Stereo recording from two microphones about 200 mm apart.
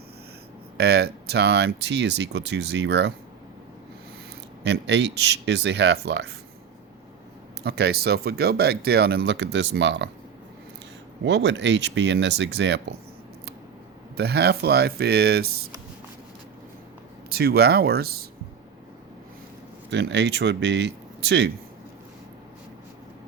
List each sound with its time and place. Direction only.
0.8 s speech: 55° right (ahead or behind)
4.6 s speech: 60° right (ahead or behind)
7.6 s speech: 55° right (ahead or behind)
11.3 s speech: 60° right (ahead or behind)
14.2 s speech: 55° right (ahead or behind)
17.2 s speech: 50° right (ahead or behind)
19.9 s speech: 65° right (ahead or behind)